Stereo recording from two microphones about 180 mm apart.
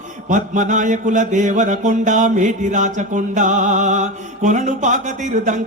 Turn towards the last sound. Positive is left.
turn(degrees=-45)  # may be behind; listen again after turning